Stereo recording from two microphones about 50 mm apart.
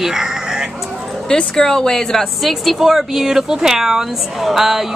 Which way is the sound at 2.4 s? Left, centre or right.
Centre.